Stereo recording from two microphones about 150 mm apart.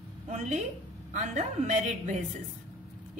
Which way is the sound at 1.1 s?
50° right (ahead or behind).